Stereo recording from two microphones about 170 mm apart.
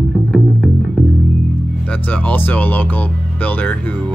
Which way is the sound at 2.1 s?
10° left (ahead or behind).